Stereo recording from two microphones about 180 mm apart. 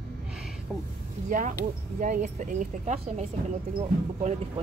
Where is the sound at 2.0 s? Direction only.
45° right (ahead or behind).